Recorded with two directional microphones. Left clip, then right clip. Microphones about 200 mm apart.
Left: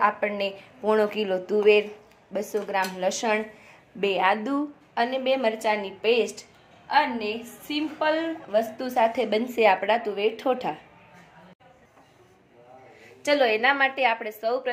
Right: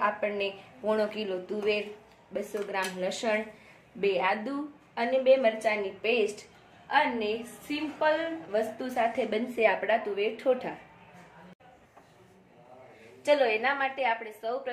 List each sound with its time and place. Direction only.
0.0 s a woman's voice: 35° left (ahead or behind)
13.2 s a woman's voice: 50° left (ahead or behind)